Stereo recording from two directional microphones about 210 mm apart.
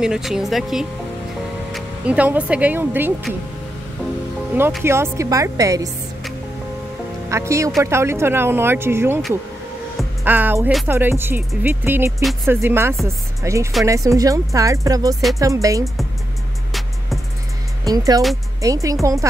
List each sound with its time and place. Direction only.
0.0 s speech: centre (ahead or behind)
4.8 s music: 10° right (ahead or behind)
7.2 s speech: 15° right (ahead or behind)
7.8 s music: 10° right (ahead or behind)
10.2 s music: 10° right (ahead or behind)
17.8 s music: 15° right (ahead or behind)